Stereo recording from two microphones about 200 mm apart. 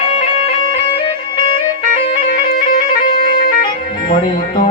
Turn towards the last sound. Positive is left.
turn(degrees=45)  # may be behind; listen again after turning